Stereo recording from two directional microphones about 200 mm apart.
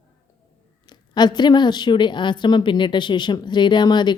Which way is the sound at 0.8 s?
20° left (ahead or behind).